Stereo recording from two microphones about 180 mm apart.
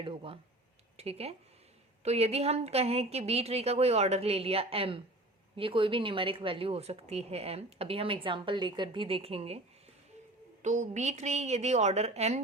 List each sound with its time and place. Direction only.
0.0 s a sound: 30° right (ahead or behind)
0.9 s a woman's voice: 35° right (ahead or behind)
10.6 s speech: 40° right (ahead or behind)